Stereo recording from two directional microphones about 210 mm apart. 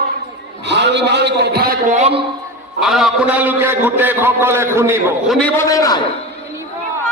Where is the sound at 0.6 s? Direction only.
55° right (ahead or behind); by 2.2 s 30° right (ahead or behind).